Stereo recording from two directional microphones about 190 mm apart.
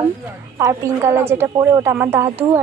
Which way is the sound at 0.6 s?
15° right (ahead or behind).